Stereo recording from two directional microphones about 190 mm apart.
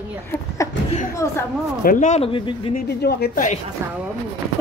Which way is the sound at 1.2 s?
15° left (ahead or behind).